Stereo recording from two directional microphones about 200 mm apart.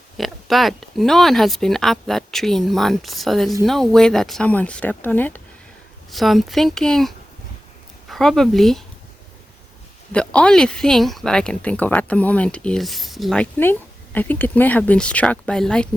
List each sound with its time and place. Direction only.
0.2 s speech: centre (ahead or behind)
8.1 s speech: centre (ahead or behind)
10.1 s speech: 5° left (ahead or behind)